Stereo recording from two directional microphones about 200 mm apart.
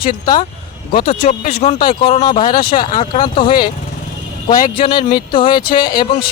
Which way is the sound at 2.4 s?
45° left (ahead or behind).